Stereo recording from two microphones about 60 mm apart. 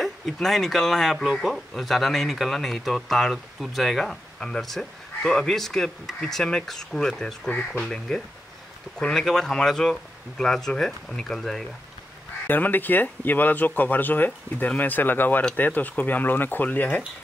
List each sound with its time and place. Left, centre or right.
0.0 s speech: centre
8.9 s speech: centre
12.4 s speech: left